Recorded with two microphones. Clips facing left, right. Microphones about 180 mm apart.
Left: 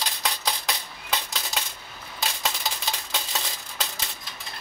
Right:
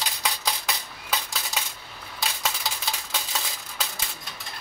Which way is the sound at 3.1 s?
Centre (ahead or behind).